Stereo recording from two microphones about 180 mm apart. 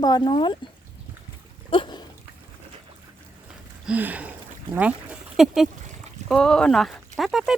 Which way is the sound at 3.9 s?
10° right (ahead or behind).